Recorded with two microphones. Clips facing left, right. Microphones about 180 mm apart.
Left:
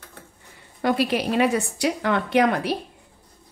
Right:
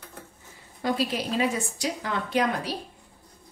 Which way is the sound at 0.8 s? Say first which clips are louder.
Left 5 dB; 65° left (ahead or behind).